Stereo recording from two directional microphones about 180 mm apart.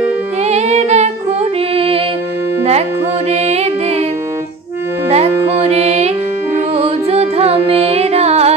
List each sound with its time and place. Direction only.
0.5 s music: 40° right (ahead or behind)
3.3 s music: 35° right (ahead or behind)
5.1 s music: 35° right (ahead or behind)